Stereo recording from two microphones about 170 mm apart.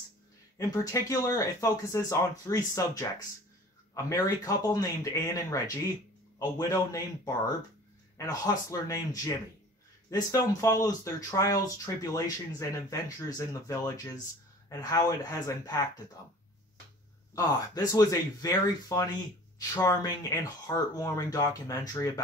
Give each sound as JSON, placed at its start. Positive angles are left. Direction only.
{"t": 0.6, "sound": "speech", "side_deg": 20}
{"t": 6.7, "sound": "speech", "side_deg": 20}
{"t": 17.4, "sound": "speech", "side_deg": 20}